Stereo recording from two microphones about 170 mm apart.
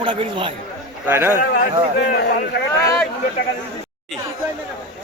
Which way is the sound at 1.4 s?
60° left (ahead or behind).